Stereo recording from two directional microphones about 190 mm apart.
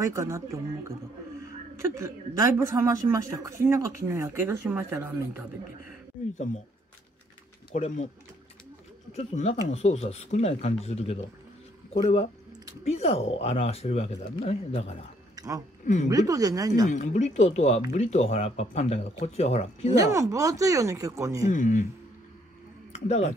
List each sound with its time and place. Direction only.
0.0 s a woman's voice: 15° right (ahead or behind)
7.7 s speech: 40° left (ahead or behind)
9.1 s speech: 35° left (ahead or behind)
15.3 s a sound: 20° right (ahead or behind)
15.8 s speech: 40° left (ahead or behind)
16.1 s speech: 20° right (ahead or behind)
16.9 s speech: 40° left (ahead or behind)
20.0 s a woman's voice: 15° right (ahead or behind)
21.5 s speech: 40° left (ahead or behind)
22.9 s speech: 35° left (ahead or behind)